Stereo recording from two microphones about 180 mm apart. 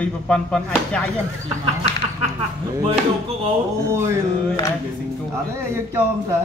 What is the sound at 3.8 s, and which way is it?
Speech, 15° right (ahead or behind).